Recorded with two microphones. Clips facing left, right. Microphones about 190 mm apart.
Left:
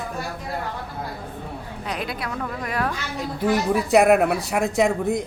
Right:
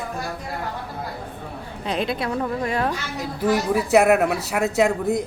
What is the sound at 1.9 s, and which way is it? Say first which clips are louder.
A woman's voice: right 6 dB; 25° right (ahead or behind).